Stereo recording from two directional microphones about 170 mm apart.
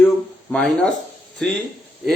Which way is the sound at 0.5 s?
Centre (ahead or behind).